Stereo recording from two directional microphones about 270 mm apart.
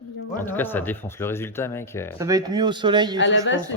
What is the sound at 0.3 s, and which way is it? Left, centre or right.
Speech, centre.